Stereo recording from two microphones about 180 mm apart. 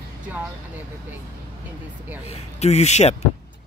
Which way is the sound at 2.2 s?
35° left (ahead or behind).